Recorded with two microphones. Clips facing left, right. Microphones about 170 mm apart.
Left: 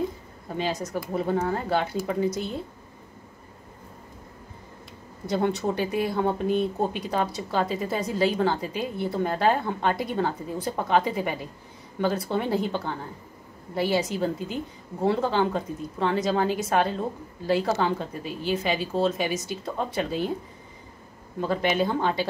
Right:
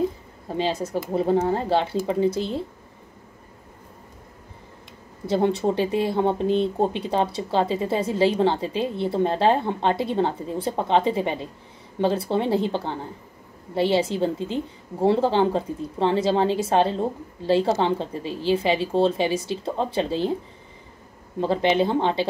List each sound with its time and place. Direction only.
0.5 s a woman's voice: 30° right (ahead or behind)
5.2 s a woman's voice: 30° right (ahead or behind)
21.4 s a woman's voice: 30° right (ahead or behind)